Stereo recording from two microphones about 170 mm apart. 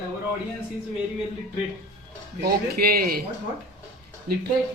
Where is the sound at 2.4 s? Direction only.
65° right (ahead or behind).